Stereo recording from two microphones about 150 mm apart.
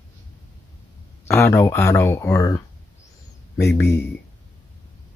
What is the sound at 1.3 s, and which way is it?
Speech, 15° left (ahead or behind).